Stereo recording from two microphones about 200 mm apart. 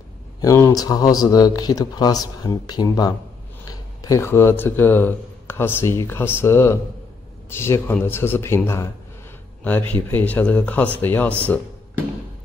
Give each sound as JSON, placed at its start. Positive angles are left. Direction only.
{"t": 0.4, "sound": "speech", "side_deg": 15}